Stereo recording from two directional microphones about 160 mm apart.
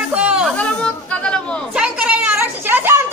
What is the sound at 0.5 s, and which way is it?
Chatter, 5° left (ahead or behind).